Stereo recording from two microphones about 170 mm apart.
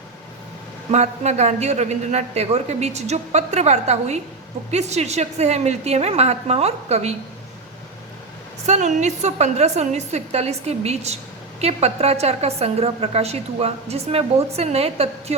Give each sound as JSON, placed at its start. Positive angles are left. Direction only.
{"t": 0.9, "sound": "a woman's voice", "side_deg": -40}
{"t": 8.6, "sound": "a woman's voice", "side_deg": -45}